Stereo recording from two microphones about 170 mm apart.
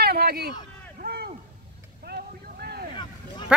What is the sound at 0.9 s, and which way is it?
Vehicle, 65° right (ahead or behind).